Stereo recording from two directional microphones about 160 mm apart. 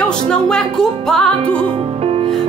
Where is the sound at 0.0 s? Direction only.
5° left (ahead or behind).